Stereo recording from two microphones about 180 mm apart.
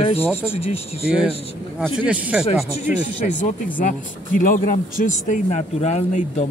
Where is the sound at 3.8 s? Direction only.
50° left (ahead or behind).